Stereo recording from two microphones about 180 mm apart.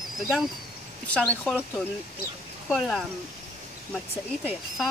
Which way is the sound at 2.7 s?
Centre (ahead or behind).